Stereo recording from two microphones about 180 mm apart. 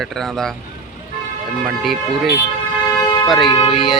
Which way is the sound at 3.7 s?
Centre (ahead or behind).